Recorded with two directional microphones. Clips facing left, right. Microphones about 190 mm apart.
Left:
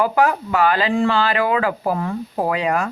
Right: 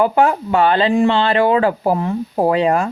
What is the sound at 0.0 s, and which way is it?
Speech, 25° right (ahead or behind).